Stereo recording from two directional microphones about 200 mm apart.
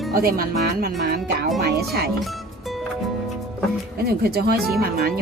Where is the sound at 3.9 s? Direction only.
50° right (ahead or behind).